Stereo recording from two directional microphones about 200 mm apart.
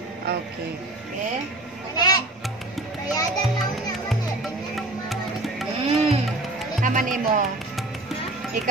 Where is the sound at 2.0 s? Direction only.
20° left (ahead or behind).